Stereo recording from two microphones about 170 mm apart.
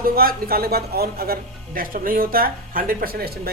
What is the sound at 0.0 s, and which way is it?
Speech, 60° right (ahead or behind).